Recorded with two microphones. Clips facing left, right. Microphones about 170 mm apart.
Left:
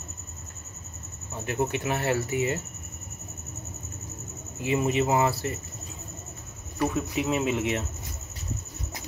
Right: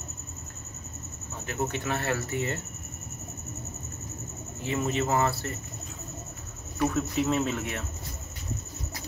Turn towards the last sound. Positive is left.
turn(degrees=20)  # may be behind; listen again after turning